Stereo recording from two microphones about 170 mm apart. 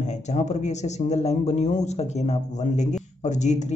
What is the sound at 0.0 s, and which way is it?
A man's voice, 45° left (ahead or behind).